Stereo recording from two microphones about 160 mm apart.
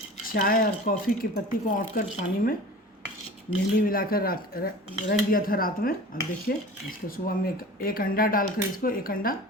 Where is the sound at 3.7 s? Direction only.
65° left (ahead or behind).